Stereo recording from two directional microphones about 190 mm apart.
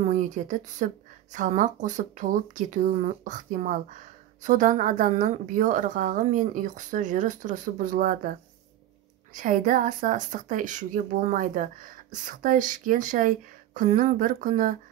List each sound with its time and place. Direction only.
0.0 s a woman's voice: 40° right (ahead or behind)